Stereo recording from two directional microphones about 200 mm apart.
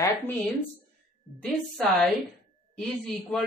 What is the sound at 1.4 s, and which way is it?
A man's voice, 5° left (ahead or behind).